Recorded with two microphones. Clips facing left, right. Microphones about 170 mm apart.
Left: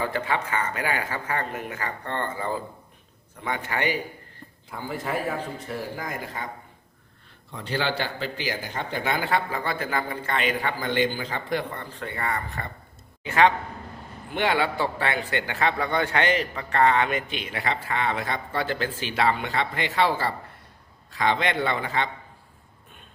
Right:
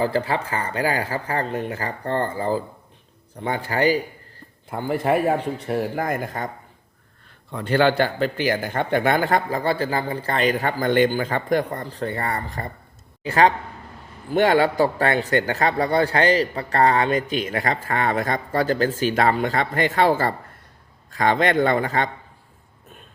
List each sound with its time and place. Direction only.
0.0 s speech: 35° right (ahead or behind)
4.7 s a man's voice: 60° right (ahead or behind)
7.5 s a man's voice: 55° right (ahead or behind)